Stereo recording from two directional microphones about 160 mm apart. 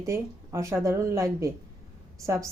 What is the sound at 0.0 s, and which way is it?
A woman's voice, 20° right (ahead or behind).